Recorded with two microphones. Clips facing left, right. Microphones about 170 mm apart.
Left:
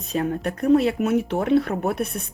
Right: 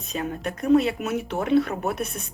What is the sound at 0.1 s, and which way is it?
Speech, 55° left (ahead or behind).